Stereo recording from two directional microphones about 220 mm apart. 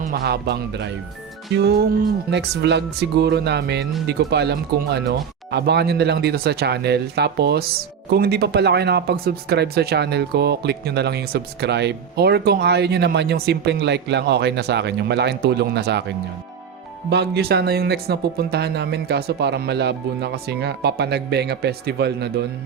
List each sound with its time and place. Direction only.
0.0 s speech: 45° right (ahead or behind)